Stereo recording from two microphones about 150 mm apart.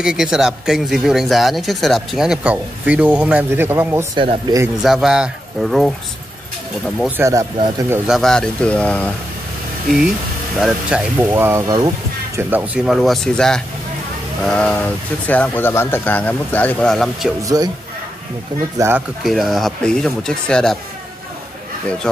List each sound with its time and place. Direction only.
0.0 s speech: 5° right (ahead or behind)
4.2 s speech: 35° right (ahead or behind)
4.8 s speech: centre (ahead or behind)
7.1 s speech: 15° right (ahead or behind)
8.1 s speech: centre (ahead or behind)
9.8 s speech: centre (ahead or behind); by 11.9 s 25° right (ahead or behind)
12.4 s speech: 10° right (ahead or behind)
17.4 s speech: 25° right (ahead or behind)
18.8 s speech: 15° right (ahead or behind)
19.2 s speech: centre (ahead or behind)